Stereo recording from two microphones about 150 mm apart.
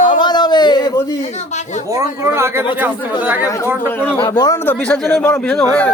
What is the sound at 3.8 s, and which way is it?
Speech, 15° left (ahead or behind).